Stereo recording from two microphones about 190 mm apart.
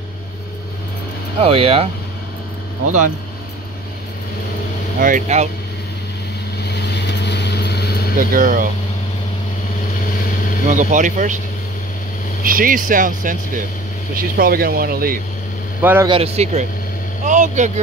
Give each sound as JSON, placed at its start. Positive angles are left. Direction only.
{"t": 1.4, "sound": "speech", "side_deg": -30}
{"t": 5.0, "sound": "speech", "side_deg": -40}
{"t": 6.7, "sound": "vehicle", "side_deg": 60}
{"t": 8.2, "sound": "speech", "side_deg": -45}
{"t": 10.7, "sound": "speech", "side_deg": -40}
{"t": 12.4, "sound": "speech", "side_deg": -45}
{"t": 15.8, "sound": "a man's voice", "side_deg": -10}
{"t": 16.1, "sound": "speech", "side_deg": -30}